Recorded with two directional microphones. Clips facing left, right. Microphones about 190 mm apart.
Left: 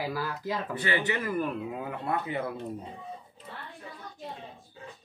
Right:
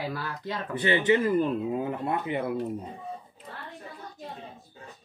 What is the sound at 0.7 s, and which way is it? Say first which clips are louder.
Speech: right 9 dB; 20° right (ahead or behind).